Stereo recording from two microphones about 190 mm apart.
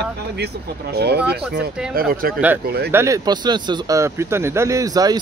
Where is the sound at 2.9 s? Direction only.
15° right (ahead or behind).